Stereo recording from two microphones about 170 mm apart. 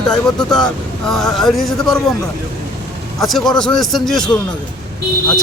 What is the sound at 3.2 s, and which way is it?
Speech, centre (ahead or behind).